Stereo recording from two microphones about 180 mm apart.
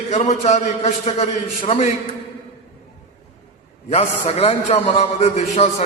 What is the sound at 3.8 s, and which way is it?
A man's voice, 35° left (ahead or behind).